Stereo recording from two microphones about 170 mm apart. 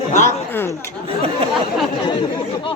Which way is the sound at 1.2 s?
35° right (ahead or behind).